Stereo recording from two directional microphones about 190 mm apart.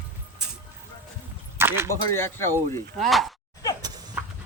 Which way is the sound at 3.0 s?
Centre (ahead or behind).